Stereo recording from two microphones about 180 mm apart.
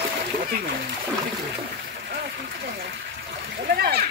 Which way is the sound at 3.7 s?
60° right (ahead or behind).